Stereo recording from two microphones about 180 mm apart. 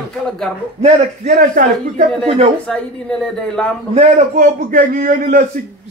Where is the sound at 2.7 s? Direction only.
5° left (ahead or behind).